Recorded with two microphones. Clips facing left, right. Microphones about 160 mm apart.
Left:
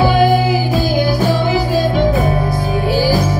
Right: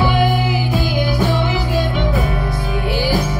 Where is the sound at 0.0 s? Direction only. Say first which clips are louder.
Left 5 dB; 35° left (ahead or behind).